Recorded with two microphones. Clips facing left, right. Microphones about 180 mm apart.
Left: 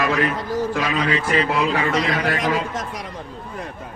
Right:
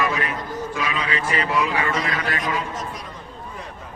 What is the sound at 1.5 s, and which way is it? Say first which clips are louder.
A man's voice: left 2 dB; 75° left (ahead or behind).